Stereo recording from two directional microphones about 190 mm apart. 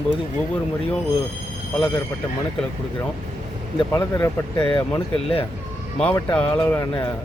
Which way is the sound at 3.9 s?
15° left (ahead or behind).